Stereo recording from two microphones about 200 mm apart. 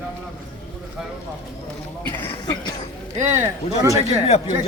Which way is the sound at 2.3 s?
25° left (ahead or behind).